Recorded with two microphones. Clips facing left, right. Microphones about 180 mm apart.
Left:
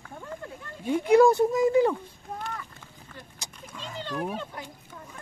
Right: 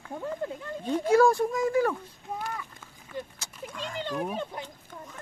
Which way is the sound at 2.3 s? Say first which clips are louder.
Right 1 dB; 5° right (ahead or behind).